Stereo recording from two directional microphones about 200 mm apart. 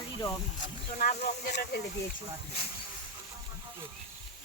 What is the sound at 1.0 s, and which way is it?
Speech, 40° left (ahead or behind).